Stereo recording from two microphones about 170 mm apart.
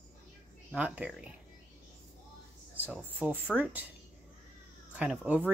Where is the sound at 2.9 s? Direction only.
10° right (ahead or behind).